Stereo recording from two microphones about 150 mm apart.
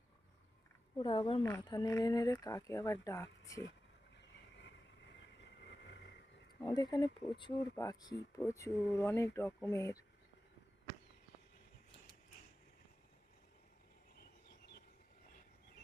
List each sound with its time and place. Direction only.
0.9 s speech: 30° left (ahead or behind)
6.6 s speech: 30° left (ahead or behind)